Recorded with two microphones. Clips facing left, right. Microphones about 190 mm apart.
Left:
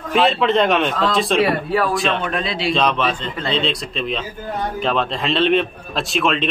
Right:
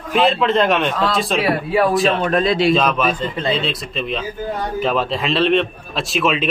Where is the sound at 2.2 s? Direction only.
45° right (ahead or behind).